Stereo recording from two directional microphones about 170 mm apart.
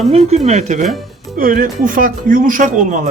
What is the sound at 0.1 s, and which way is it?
Speech, 40° right (ahead or behind).